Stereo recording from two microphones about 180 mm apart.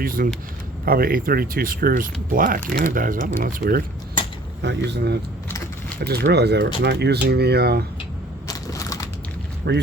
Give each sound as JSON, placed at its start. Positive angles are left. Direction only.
{"t": 0.0, "sound": "speech", "side_deg": -50}
{"t": 4.6, "sound": "speech", "side_deg": -75}
{"t": 8.4, "sound": "crushing", "side_deg": 20}
{"t": 9.7, "sound": "speech", "side_deg": -70}